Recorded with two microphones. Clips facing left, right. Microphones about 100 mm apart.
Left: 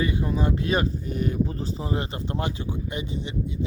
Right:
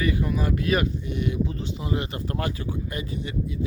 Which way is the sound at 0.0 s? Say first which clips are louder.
Even; 25° left (ahead or behind).